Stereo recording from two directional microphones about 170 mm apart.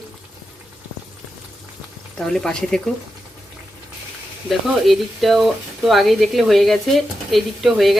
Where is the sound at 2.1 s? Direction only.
Centre (ahead or behind).